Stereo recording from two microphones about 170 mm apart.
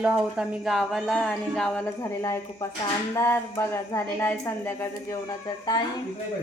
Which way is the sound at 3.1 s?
15° left (ahead or behind).